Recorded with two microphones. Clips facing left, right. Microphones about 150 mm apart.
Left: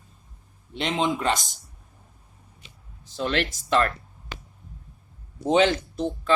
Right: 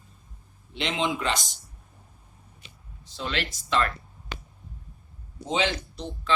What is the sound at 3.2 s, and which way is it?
Speech, 50° left (ahead or behind).